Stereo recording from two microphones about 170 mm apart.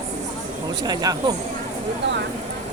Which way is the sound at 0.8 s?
20° right (ahead or behind).